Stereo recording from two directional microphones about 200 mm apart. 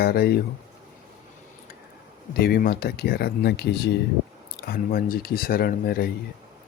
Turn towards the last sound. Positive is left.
turn(degrees=50)  # may be behind; listen again after turning